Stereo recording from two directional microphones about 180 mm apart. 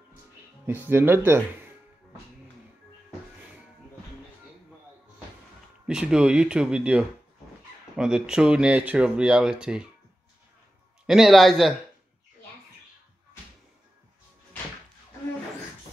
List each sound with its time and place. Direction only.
0.7 s speech: 10° right (ahead or behind)
5.9 s speech: 5° right (ahead or behind)
11.1 s speech: centre (ahead or behind)